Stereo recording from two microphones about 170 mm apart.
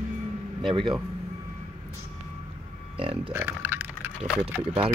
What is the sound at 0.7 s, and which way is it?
Speech, 30° right (ahead or behind).